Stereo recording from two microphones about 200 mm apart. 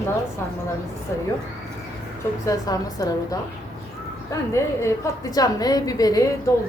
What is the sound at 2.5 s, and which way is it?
A woman's voice, 15° left (ahead or behind).